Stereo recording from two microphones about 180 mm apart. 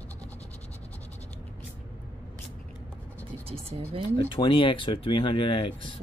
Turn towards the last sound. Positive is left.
turn(degrees=30)  # may be behind; listen again after turning